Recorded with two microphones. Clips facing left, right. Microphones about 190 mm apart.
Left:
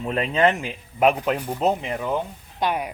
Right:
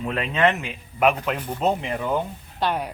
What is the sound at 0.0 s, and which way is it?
Speech, 30° left (ahead or behind).